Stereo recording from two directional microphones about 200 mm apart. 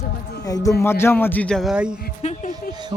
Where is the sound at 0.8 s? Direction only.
10° left (ahead or behind); by 2.0 s 5° right (ahead or behind).